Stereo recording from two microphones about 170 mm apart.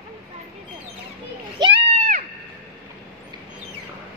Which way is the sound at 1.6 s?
30° right (ahead or behind).